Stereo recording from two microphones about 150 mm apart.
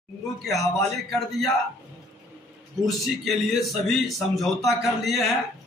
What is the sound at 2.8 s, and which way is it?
A man's voice, centre (ahead or behind).